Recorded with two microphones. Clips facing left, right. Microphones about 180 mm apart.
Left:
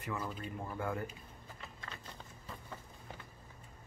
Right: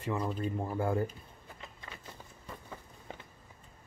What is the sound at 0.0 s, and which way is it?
Speech, 30° right (ahead or behind).